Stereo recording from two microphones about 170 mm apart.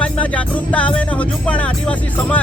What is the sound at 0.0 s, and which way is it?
Music, 10° left (ahead or behind).